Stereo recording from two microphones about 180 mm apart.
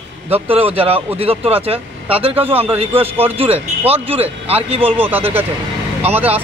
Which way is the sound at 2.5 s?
30° right (ahead or behind).